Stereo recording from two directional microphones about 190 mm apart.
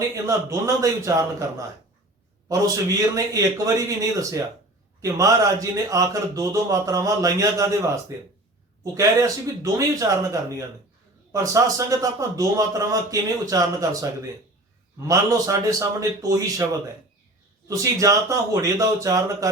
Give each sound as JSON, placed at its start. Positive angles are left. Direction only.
{"t": 0.3, "sound": "a man's voice", "side_deg": -15}
{"t": 3.3, "sound": "a man's voice", "side_deg": -15}
{"t": 17.7, "sound": "a man's voice", "side_deg": -15}